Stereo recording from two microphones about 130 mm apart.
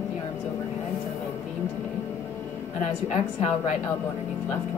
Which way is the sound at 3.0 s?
55° left (ahead or behind).